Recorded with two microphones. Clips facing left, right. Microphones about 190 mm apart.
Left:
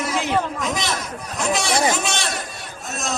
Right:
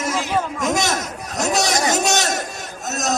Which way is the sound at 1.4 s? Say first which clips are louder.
Right 1 dB; 40° right (ahead or behind).